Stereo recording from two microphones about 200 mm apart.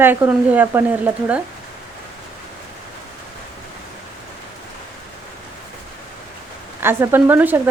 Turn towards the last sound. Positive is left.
turn(degrees=-10)  # may be behind; listen again after turning